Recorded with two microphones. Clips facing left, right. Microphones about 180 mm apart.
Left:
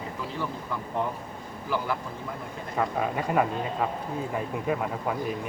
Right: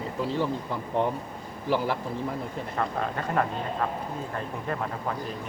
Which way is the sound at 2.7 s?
10° left (ahead or behind).